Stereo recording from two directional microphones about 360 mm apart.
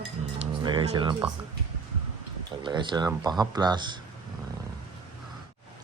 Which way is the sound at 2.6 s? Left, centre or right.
Centre.